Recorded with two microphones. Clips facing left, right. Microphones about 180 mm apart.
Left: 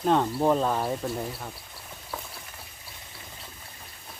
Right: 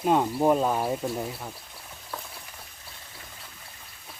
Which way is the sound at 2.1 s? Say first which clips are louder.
Left 1 dB; centre (ahead or behind).